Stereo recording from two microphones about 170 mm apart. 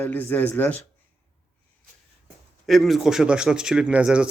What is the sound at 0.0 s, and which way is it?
Speech, 10° left (ahead or behind).